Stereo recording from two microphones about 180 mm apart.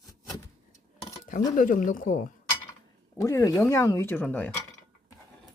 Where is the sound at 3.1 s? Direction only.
15° left (ahead or behind).